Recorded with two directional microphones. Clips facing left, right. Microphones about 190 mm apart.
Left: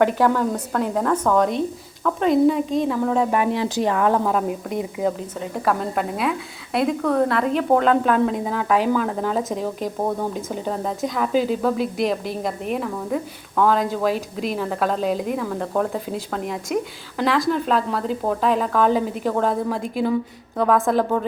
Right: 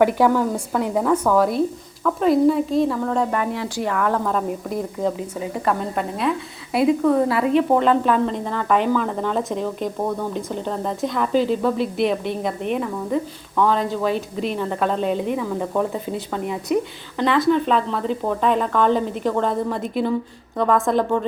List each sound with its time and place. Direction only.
0.0 s a woman's voice: 10° right (ahead or behind)
3.3 s a woman's voice: 15° left (ahead or behind)
4.3 s a woman's voice: 5° left (ahead or behind)